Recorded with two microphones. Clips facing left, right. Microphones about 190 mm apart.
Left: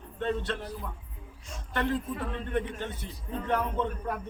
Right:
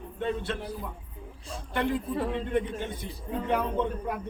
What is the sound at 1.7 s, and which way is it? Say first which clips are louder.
A man's voice: right 2 dB; 10° right (ahead or behind).